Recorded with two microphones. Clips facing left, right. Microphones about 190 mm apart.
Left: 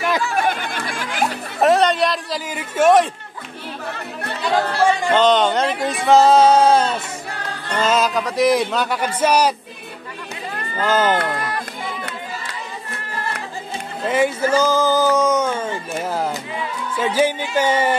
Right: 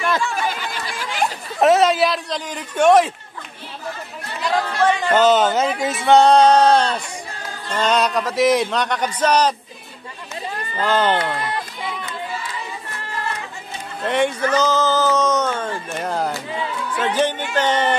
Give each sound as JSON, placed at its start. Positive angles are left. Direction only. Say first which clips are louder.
{"t": 0.3, "sound": "a sound", "louder": "left 4 dB", "side_deg": 60}
{"t": 1.0, "sound": "a sound", "louder": "even", "side_deg": 0}
{"t": 4.5, "sound": "speech", "louder": "left 1 dB", "side_deg": 10}
{"t": 5.1, "sound": "speech", "louder": "right 2 dB", "side_deg": -5}
{"t": 7.2, "sound": "music", "louder": "left 2 dB", "side_deg": 65}
{"t": 7.8, "sound": "speech", "louder": "even", "side_deg": 0}
{"t": 10.9, "sound": "speech", "louder": "left 1 dB", "side_deg": 5}
{"t": 14.0, "sound": "speech", "louder": "left 1 dB", "side_deg": 5}